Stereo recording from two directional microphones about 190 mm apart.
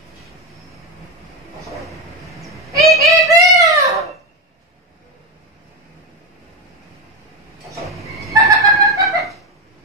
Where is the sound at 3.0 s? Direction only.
15° right (ahead or behind).